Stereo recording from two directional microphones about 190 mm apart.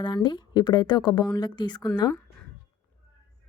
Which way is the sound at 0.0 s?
25° left (ahead or behind).